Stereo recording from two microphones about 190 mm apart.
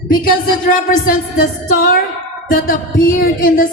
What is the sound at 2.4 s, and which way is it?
A man's voice, 50° left (ahead or behind).